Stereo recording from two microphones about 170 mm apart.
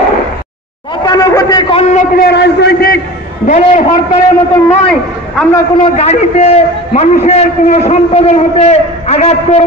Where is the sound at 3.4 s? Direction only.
45° left (ahead or behind).